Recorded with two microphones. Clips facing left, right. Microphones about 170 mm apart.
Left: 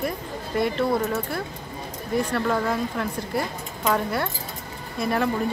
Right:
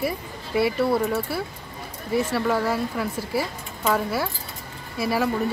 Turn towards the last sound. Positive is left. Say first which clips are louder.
# even
turn(degrees=-5)  # may be behind; listen again after turning